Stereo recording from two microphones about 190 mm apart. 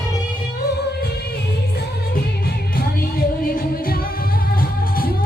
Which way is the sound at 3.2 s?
50° left (ahead or behind).